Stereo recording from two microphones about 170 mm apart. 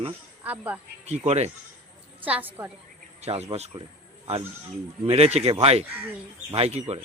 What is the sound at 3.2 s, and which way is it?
Speech, 40° right (ahead or behind).